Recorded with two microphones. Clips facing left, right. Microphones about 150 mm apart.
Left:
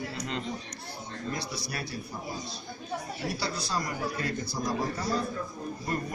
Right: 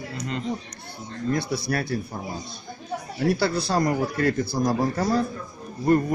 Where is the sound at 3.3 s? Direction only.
60° right (ahead or behind).